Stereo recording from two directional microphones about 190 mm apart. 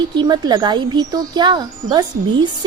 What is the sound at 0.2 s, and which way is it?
A woman's voice, 20° right (ahead or behind).